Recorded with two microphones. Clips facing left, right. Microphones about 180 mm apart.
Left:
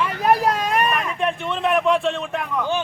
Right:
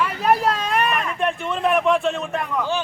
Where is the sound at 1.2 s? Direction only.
Centre (ahead or behind).